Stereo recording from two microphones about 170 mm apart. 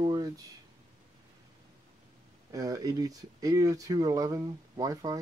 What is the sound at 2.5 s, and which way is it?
Speech, 20° right (ahead or behind).